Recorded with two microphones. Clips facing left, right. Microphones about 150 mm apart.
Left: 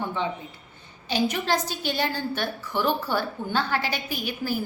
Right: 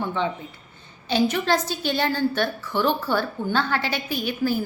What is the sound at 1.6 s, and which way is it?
Speech, 10° left (ahead or behind).